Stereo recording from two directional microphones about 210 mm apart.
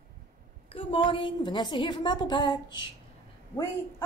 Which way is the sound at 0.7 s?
25° left (ahead or behind).